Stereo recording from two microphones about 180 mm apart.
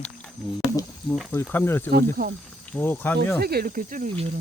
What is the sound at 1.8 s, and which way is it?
Speech, 55° right (ahead or behind).